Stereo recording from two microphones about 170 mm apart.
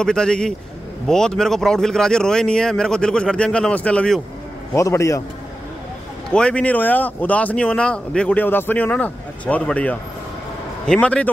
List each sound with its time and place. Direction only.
0.0 s a man's voice: 5° left (ahead or behind)
4.7 s speech: 15° left (ahead or behind)
6.3 s speech: 5° left (ahead or behind)